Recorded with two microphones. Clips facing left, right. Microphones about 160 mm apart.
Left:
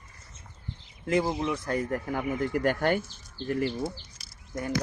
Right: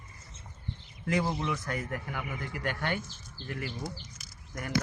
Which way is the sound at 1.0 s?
25° left (ahead or behind).